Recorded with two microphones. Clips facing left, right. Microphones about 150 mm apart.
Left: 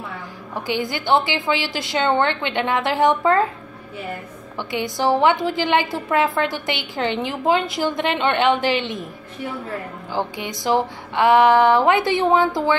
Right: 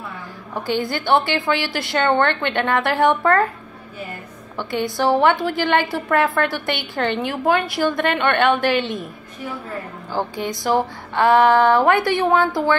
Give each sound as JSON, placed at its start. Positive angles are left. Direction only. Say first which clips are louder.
{"t": 0.7, "sound": "a woman's voice", "louder": "right 1 dB", "side_deg": 15}
{"t": 4.6, "sound": "a woman's voice", "louder": "right 1 dB", "side_deg": 20}
{"t": 10.2, "sound": "a woman's voice", "louder": "right 2 dB", "side_deg": 15}